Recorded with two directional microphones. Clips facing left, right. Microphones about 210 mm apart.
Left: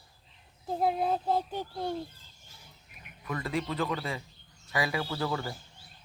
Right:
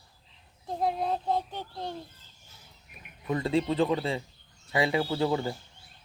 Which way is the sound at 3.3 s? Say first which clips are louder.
Right 6 dB; 25° right (ahead or behind).